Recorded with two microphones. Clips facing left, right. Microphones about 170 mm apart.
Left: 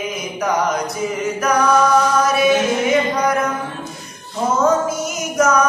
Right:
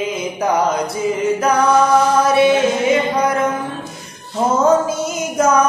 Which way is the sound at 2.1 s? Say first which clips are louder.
Right 3 dB; 30° right (ahead or behind).